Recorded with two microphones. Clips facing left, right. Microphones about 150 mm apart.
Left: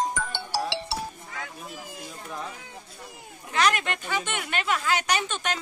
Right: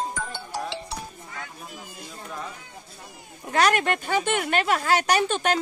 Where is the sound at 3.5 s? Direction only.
45° right (ahead or behind).